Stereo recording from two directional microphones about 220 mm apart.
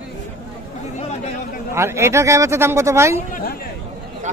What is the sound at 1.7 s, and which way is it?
Speech, 10° right (ahead or behind).